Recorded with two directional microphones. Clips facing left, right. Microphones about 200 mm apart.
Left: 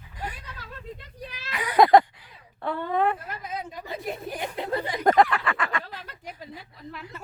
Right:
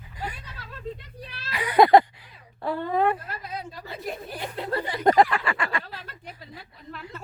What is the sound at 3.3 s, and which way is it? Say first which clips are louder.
Speech: left 1 dB; 20° left (ahead or behind).